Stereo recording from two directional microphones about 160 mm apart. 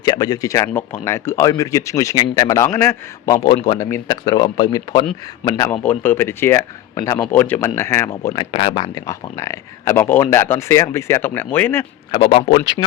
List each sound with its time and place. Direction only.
0.0 s speech: 25° left (ahead or behind)
4.3 s speech: 25° left (ahead or behind)
5.8 s speech: 10° left (ahead or behind)
8.4 s speech: 35° left (ahead or behind); by 11.9 s 15° left (ahead or behind)
12.1 s a man's voice: 35° left (ahead or behind)